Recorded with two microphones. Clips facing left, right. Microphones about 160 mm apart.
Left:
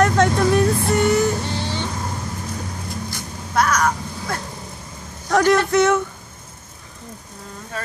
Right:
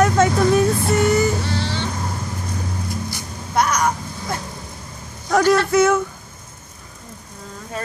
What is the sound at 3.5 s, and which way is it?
Vehicle, 15° right (ahead or behind).